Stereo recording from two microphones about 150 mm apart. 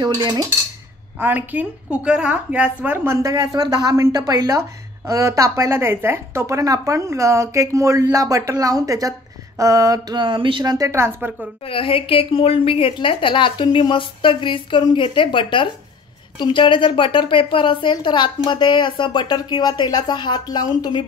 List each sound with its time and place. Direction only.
0.0 s a woman's voice: 30° right (ahead or behind)
1.2 s a woman's voice: 10° right (ahead or behind)
11.6 s a woman's voice: 35° left (ahead or behind)